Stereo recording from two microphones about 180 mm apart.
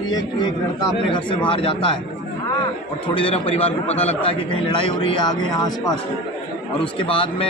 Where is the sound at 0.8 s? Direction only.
30° left (ahead or behind).